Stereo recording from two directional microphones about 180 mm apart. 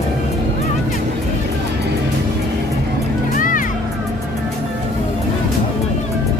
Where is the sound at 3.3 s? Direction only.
50° left (ahead or behind).